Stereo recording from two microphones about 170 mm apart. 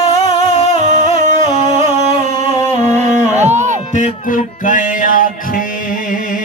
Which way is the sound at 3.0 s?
45° right (ahead or behind).